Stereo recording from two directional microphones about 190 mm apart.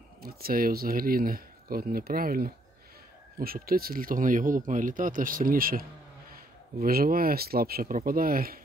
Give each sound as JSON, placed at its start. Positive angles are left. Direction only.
{"t": 0.2, "sound": "speech", "side_deg": -50}